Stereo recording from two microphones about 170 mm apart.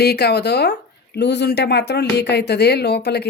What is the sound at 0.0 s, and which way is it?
Speech, 75° left (ahead or behind).